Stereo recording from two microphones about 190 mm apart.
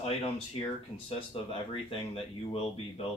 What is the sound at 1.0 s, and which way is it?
Speech, 30° left (ahead or behind).